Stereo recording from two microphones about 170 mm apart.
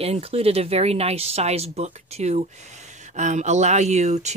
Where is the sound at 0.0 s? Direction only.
35° right (ahead or behind).